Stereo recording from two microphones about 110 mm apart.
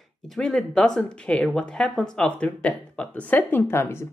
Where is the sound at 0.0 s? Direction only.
5° left (ahead or behind).